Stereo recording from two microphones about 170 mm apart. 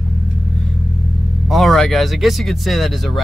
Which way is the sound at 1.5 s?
Centre (ahead or behind).